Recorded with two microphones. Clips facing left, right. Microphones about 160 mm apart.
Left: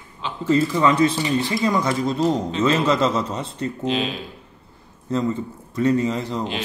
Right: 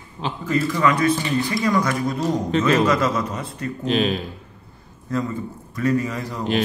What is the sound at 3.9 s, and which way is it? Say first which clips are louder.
Speech: right 7 dB; 50° right (ahead or behind).